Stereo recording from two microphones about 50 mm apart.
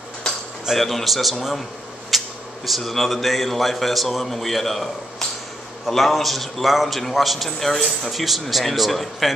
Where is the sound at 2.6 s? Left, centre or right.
Centre.